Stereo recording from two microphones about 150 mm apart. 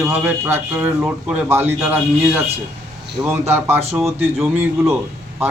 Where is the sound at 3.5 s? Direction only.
15° right (ahead or behind).